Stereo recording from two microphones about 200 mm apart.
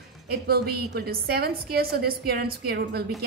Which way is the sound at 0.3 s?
50° right (ahead or behind).